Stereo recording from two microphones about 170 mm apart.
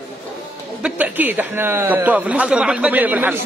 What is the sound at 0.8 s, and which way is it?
Speech, 10° right (ahead or behind).